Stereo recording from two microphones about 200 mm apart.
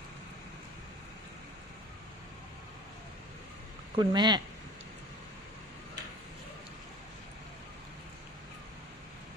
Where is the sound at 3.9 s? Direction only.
20° right (ahead or behind).